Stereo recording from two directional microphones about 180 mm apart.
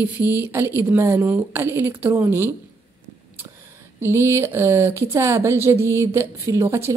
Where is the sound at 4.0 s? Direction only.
15° right (ahead or behind).